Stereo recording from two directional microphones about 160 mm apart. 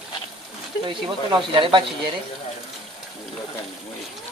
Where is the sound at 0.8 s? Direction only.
30° right (ahead or behind).